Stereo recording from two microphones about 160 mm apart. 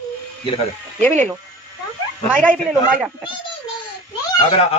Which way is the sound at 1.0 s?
50° right (ahead or behind).